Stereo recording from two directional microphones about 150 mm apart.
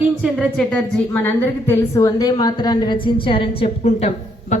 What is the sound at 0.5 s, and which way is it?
A woman's voice, 10° left (ahead or behind).